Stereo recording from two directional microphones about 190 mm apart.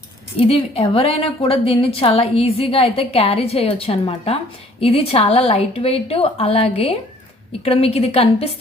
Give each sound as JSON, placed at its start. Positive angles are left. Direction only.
{"t": 0.3, "sound": "a woman's voice", "side_deg": 30}